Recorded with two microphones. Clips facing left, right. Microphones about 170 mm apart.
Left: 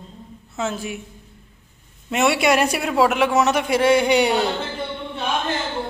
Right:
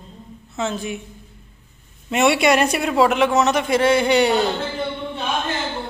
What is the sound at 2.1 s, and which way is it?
A man's voice, centre (ahead or behind).